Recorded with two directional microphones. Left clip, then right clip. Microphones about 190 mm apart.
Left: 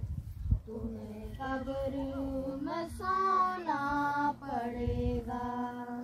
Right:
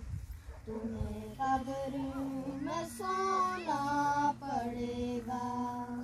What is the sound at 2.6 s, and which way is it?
Child singing, 45° right (ahead or behind).